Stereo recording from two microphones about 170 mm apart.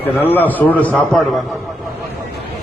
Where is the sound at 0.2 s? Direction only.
10° left (ahead or behind).